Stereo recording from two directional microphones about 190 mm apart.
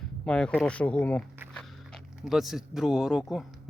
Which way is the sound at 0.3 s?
5° left (ahead or behind).